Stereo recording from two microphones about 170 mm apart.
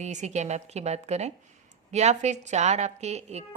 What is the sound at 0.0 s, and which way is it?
A woman's voice, 45° right (ahead or behind).